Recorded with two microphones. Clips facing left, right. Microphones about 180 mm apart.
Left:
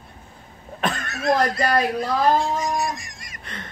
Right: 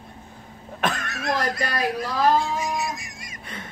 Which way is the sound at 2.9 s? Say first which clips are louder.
Left 1 dB; 5° right (ahead or behind).